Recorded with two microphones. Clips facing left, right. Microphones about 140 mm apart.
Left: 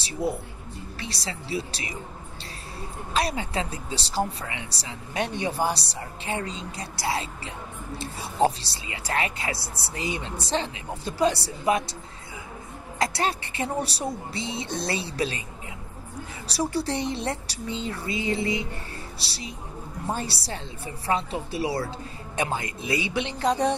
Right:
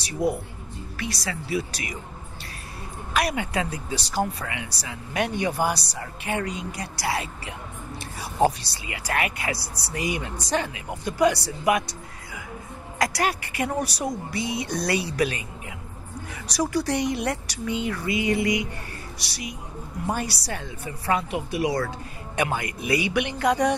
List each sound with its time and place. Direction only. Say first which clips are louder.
0.0 s a woman's voice: right 3 dB; 25° left (ahead or behind)
3.1 s a woman's voice: right 2 dB; 30° left (ahead or behind)
8.8 s a woman's voice: right 1 dB; 25° left (ahead or behind)
13.0 s a woman's voice: right 1 dB; 30° left (ahead or behind)
16.4 s a woman's voice: right 2 dB; 30° left (ahead or behind)